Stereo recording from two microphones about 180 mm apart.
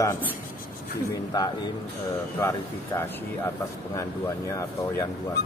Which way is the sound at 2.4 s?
15° left (ahead or behind).